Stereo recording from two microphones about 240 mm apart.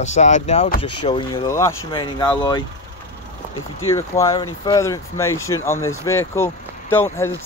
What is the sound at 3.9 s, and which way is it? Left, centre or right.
Speech, centre.